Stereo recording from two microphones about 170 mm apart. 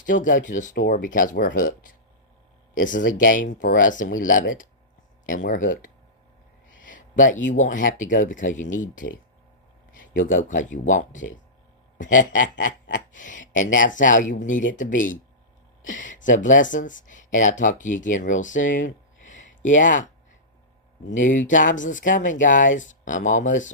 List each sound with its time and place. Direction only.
0.0 s speech: 50° left (ahead or behind)
2.7 s speech: 50° left (ahead or behind)
21.1 s speech: 50° left (ahead or behind)